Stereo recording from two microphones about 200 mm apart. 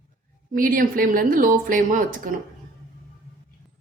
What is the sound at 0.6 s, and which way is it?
Speech, 45° right (ahead or behind).